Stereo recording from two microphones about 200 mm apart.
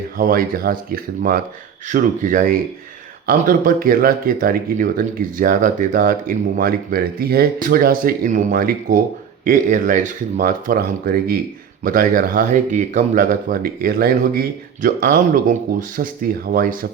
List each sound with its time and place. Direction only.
0.2 s speech: 45° right (ahead or behind)